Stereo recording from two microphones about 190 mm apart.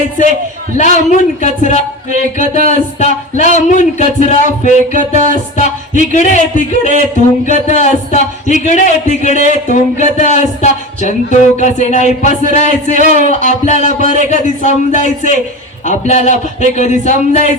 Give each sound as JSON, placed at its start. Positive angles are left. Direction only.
{"t": 0.8, "sound": "speech", "side_deg": 40}
{"t": 7.4, "sound": "speech", "side_deg": 40}